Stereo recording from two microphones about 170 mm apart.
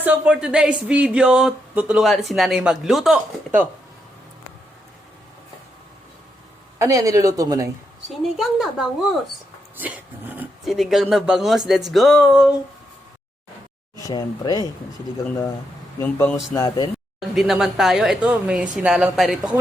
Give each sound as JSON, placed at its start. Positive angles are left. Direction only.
{"t": 0.0, "sound": "speech", "side_deg": -5}
{"t": 6.7, "sound": "speech", "side_deg": -20}
{"t": 8.4, "sound": "speech", "side_deg": 0}
{"t": 14.1, "sound": "speech", "side_deg": 25}
{"t": 16.0, "sound": "speech", "side_deg": 15}
{"t": 16.6, "sound": "speech", "side_deg": 25}
{"t": 17.2, "sound": "speech", "side_deg": 0}